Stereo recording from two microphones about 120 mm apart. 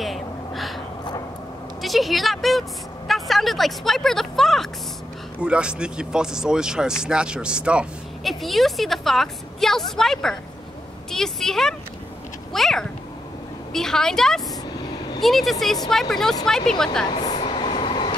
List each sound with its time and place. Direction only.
0.0 s gasp: centre (ahead or behind)
1.8 s speech: centre (ahead or behind)
5.4 s a woman's voice: 10° right (ahead or behind)
17.1 s speech: 35° left (ahead or behind)
17.5 s train: 40° left (ahead or behind)